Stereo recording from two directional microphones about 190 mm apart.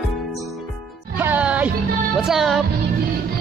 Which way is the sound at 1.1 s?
10° right (ahead or behind).